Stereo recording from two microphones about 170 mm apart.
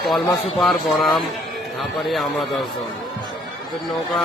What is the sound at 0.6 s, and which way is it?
Speech, centre (ahead or behind).